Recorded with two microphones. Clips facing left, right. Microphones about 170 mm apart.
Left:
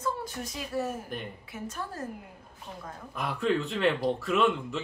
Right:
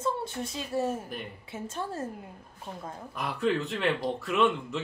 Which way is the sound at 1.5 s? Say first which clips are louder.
Right 4 dB; 25° right (ahead or behind).